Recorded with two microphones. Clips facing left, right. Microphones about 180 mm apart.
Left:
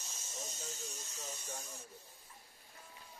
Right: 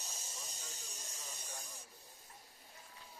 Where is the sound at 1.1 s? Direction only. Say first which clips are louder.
Left 4 dB; 40° left (ahead or behind).